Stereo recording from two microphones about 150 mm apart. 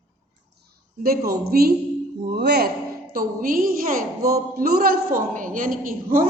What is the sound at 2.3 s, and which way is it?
Speech, 90° right.